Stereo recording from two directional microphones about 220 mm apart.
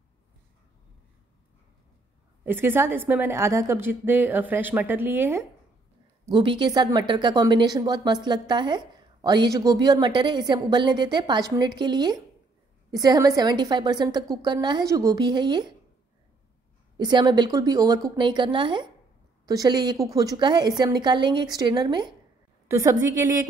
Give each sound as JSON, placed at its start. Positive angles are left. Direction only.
{"t": 2.4, "sound": "a woman's voice", "side_deg": -10}
{"t": 6.2, "sound": "a woman's voice", "side_deg": -20}
{"t": 16.9, "sound": "a woman's voice", "side_deg": -20}